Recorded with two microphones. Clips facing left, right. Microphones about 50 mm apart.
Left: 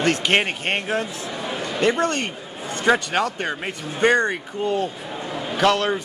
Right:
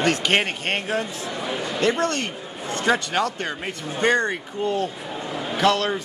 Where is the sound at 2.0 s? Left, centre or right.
Left.